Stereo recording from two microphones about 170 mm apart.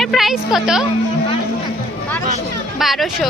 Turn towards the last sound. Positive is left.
turn(degrees=0)  # may be behind; listen again after turning